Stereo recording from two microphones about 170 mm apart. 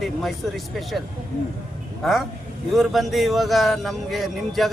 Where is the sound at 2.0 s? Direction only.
Centre (ahead or behind).